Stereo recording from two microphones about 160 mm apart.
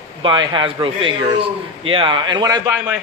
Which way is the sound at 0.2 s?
30° right (ahead or behind).